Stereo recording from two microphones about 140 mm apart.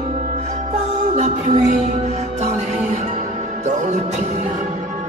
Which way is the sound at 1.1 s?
55° right (ahead or behind).